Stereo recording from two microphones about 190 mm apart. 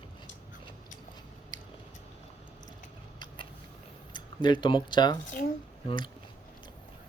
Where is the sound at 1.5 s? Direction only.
20° left (ahead or behind).